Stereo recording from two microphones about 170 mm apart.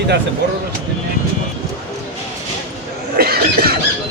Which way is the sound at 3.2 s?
65° right (ahead or behind).